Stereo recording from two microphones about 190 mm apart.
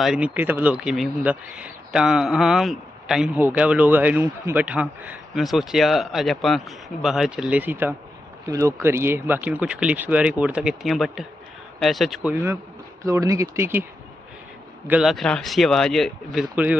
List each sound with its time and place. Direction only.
0.0 s speech: 5° right (ahead or behind)
14.9 s speech: centre (ahead or behind)